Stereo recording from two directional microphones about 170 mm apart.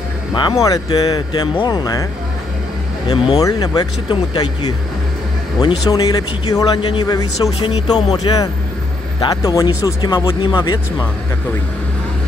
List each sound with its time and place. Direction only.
0.3 s speech: 25° left (ahead or behind)
3.1 s speech: 20° left (ahead or behind)